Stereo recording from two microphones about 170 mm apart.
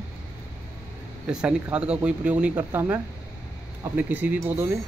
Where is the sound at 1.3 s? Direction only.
5° right (ahead or behind).